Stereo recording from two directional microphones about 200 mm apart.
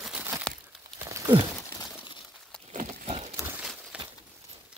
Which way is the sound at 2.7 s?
35° right (ahead or behind).